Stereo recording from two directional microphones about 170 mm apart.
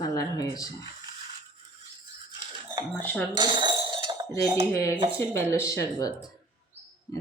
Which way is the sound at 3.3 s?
25° right (ahead or behind).